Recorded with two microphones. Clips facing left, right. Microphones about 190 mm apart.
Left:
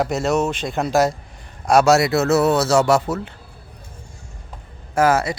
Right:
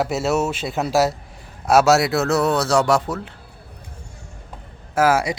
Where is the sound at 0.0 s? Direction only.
5° right (ahead or behind).